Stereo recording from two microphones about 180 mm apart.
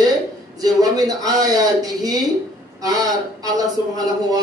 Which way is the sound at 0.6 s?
20° right (ahead or behind).